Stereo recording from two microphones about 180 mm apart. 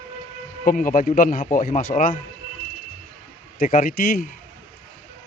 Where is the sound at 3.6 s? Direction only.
50° left (ahead or behind).